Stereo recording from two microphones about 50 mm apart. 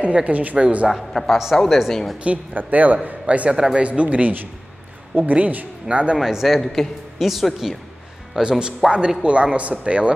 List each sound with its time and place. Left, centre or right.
0.0 s speech: right
0.8 s speech: centre
2.5 s speech: right
3.5 s speech: centre
3.8 s speech: right
6.1 s speech: centre
8.4 s speech: centre